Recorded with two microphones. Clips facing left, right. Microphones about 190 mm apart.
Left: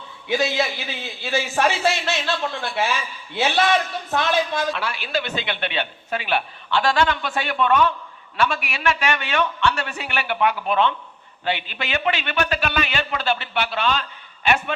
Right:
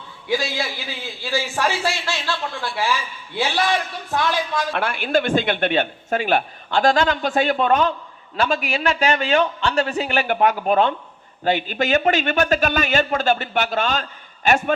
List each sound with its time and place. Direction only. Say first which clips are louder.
0.3 s a man's voice: left 2 dB; 20° left (ahead or behind)
4.7 s a man's voice: right 5 dB; 50° right (ahead or behind)